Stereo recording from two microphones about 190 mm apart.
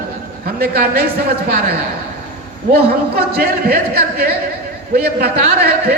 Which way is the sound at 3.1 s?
55° right (ahead or behind).